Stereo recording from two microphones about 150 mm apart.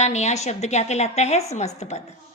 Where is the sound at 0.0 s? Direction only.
50° left (ahead or behind).